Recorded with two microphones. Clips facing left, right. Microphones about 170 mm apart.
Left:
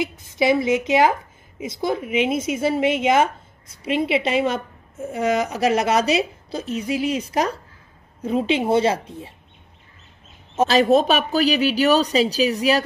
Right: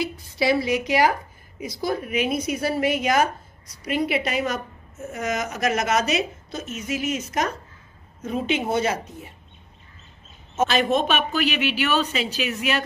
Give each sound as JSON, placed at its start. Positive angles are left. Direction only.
{"t": 0.0, "sound": "a woman's voice", "side_deg": 20}
{"t": 10.6, "sound": "speech", "side_deg": 35}